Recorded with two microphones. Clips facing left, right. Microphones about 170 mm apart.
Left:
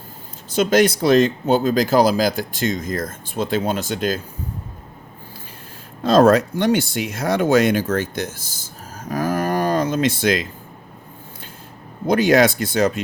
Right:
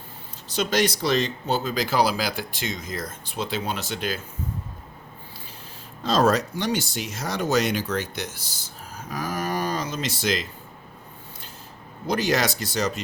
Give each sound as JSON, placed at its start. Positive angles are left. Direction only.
{"t": 0.5, "sound": "speech", "side_deg": 50}
{"t": 6.0, "sound": "speech", "side_deg": 55}
{"t": 9.0, "sound": "a sound", "side_deg": 50}
{"t": 12.0, "sound": "speech", "side_deg": 55}